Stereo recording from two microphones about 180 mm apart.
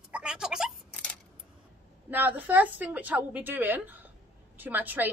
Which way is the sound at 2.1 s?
10° right (ahead or behind).